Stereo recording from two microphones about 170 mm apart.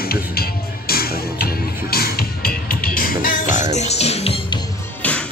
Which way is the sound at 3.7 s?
40° left (ahead or behind).